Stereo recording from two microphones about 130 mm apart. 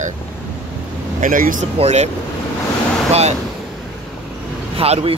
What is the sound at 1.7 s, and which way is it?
Speech, 60° right (ahead or behind).